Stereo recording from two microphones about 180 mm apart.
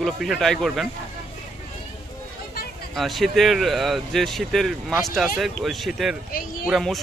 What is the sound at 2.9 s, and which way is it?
Speech, centre (ahead or behind).